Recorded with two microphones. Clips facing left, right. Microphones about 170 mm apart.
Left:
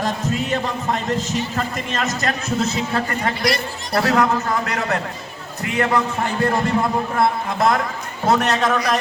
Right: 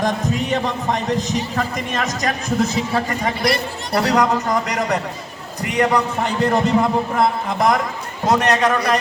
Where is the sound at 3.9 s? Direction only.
5° left (ahead or behind).